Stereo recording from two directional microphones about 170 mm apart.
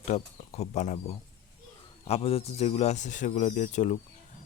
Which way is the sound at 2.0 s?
35° left (ahead or behind).